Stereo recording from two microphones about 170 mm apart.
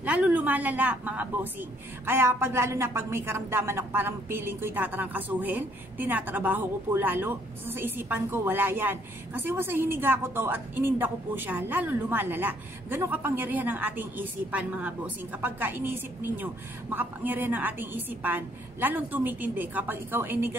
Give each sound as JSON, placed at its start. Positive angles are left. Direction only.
{"t": 0.0, "sound": "a woman's voice", "side_deg": -10}